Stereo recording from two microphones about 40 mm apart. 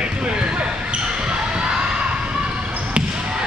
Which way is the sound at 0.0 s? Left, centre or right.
Right.